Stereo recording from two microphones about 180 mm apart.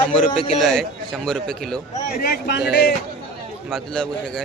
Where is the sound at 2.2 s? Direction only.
65° left (ahead or behind).